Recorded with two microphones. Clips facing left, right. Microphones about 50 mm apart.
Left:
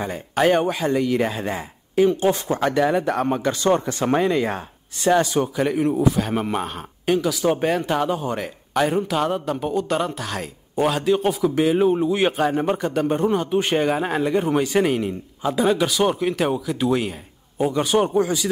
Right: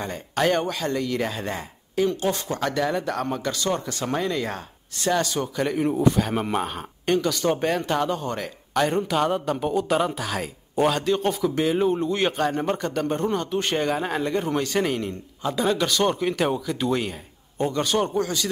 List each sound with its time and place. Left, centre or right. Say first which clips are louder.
0.0 s speech: left 4 dB; centre
5.6 s speech: even; centre